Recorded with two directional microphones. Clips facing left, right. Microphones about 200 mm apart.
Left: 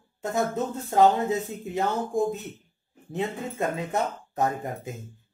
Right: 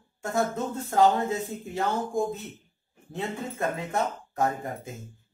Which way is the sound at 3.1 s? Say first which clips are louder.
Left 3 dB; 20° left (ahead or behind).